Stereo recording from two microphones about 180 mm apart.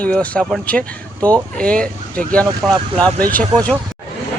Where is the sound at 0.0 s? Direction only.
5° left (ahead or behind).